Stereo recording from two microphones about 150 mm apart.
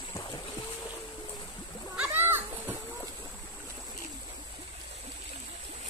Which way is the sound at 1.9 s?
15° right (ahead or behind).